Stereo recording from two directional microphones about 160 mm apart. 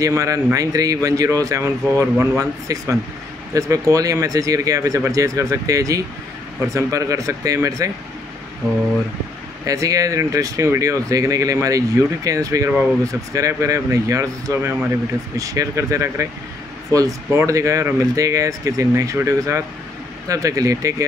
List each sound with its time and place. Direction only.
0.0 s speech: 20° right (ahead or behind)
9.7 s speech: 20° right (ahead or behind)